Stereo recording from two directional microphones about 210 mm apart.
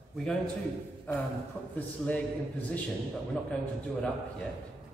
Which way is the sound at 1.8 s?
5° left (ahead or behind).